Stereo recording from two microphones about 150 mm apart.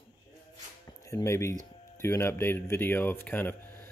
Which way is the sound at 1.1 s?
20° left (ahead or behind).